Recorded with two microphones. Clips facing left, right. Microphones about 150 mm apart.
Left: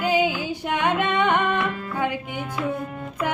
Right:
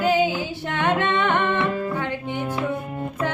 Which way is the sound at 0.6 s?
15° left (ahead or behind).